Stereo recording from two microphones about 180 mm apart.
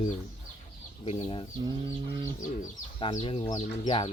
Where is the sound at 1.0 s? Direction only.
35° left (ahead or behind).